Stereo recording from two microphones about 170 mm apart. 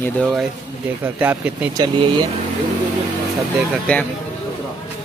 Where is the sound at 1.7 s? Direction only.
30° right (ahead or behind).